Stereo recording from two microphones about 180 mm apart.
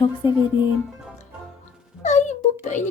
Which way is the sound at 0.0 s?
25° left (ahead or behind).